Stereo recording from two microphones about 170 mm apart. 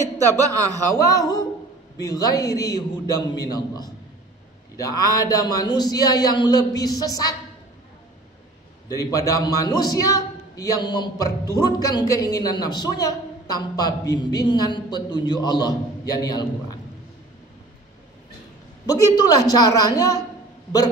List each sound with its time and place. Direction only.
0.5 s a man's voice: 20° right (ahead or behind)
0.9 s a man's voice: 20° left (ahead or behind)
8.8 s a man's voice: 20° left (ahead or behind)
18.9 s a man's voice: 20° left (ahead or behind)